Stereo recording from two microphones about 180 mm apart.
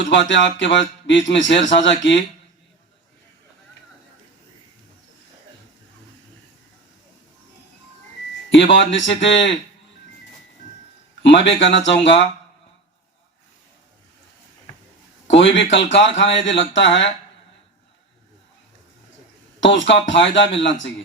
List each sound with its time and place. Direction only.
0.1 s speech: 90° left
8.4 s speech: 90° left
11.2 s speech: 85° left
15.3 s speech: 90° left
19.5 s speech: 90° left